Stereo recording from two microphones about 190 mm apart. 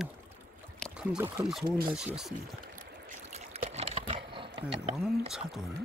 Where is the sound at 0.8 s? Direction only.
5° right (ahead or behind).